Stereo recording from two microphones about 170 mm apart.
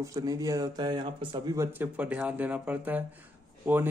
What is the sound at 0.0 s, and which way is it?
Speech, 20° right (ahead or behind).